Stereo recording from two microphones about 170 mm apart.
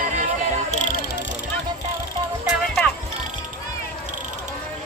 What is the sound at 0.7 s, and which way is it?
Music, 50° left (ahead or behind).